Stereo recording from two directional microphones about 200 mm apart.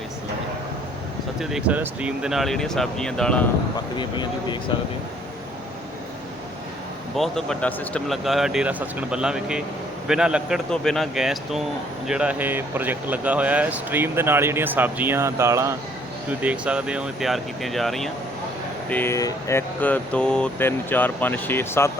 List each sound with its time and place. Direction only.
1.4 s speech: centre (ahead or behind)
3.9 s speech: 25° left (ahead or behind)
7.2 s speech: centre (ahead or behind)